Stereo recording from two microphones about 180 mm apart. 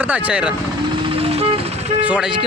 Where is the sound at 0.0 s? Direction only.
10° right (ahead or behind).